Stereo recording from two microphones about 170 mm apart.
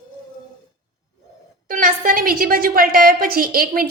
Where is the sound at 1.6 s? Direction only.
55° right (ahead or behind).